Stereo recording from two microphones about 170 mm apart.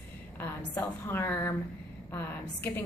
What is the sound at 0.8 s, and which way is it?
A woman's voice, 15° left (ahead or behind).